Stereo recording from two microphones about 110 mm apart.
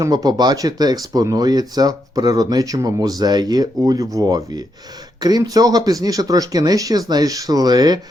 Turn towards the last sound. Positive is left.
turn(degrees=-40)  # may be behind; listen again after turning